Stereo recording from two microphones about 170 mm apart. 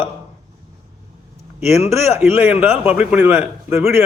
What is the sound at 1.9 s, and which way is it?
Speech, 15° right (ahead or behind).